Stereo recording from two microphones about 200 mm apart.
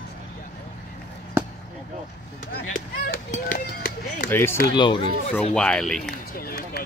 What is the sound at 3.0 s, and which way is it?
Speech, 45° left (ahead or behind).